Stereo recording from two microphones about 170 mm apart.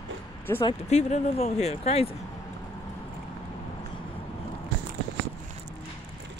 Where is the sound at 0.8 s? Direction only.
40° left (ahead or behind).